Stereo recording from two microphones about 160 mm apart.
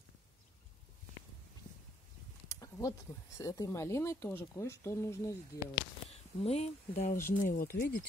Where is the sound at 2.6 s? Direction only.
20° left (ahead or behind).